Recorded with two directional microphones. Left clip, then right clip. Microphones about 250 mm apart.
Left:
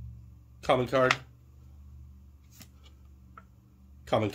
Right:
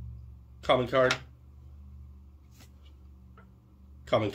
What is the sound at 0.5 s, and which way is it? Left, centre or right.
Speech, left.